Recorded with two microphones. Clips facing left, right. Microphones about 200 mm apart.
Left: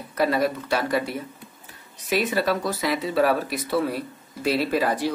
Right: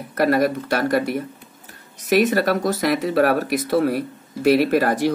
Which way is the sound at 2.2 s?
45° right (ahead or behind).